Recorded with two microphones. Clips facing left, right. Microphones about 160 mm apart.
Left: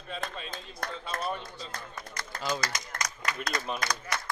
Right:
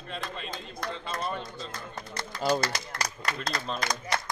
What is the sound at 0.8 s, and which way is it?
Speech, 50° left (ahead or behind).